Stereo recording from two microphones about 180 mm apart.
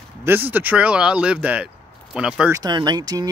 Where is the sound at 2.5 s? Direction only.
20° right (ahead or behind).